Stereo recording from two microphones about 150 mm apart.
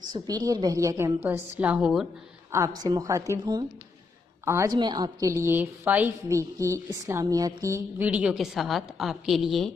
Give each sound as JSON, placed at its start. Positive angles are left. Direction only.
{"t": 0.1, "sound": "a woman's voice", "side_deg": -25}
{"t": 2.8, "sound": "a woman's voice", "side_deg": -25}
{"t": 8.0, "sound": "a woman's voice", "side_deg": -10}